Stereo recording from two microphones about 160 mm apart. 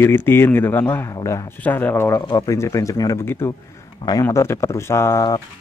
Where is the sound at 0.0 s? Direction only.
15° left (ahead or behind).